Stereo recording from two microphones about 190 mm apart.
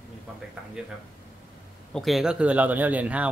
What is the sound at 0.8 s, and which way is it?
Speech, 5° right (ahead or behind).